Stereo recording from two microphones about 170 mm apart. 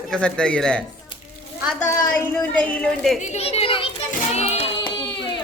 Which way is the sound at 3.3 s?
35° left (ahead or behind).